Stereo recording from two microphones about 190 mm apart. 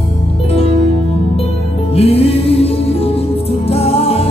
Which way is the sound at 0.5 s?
30° left (ahead or behind).